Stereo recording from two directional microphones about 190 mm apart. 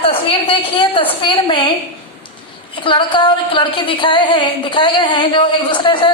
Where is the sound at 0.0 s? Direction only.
30° left (ahead or behind).